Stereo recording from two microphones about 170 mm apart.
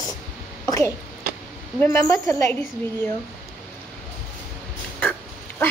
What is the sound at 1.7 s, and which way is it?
Speech, 15° left (ahead or behind).